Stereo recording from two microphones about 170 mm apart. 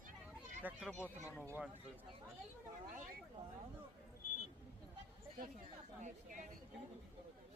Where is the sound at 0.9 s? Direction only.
10° left (ahead or behind).